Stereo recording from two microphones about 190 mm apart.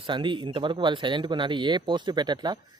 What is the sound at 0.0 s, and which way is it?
Speech, 25° right (ahead or behind).